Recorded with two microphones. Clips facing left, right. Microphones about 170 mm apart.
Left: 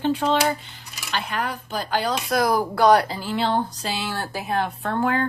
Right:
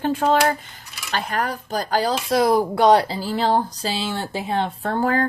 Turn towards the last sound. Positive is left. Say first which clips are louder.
# right 2 dB
turn(degrees=-40)  # may be behind; listen again after turning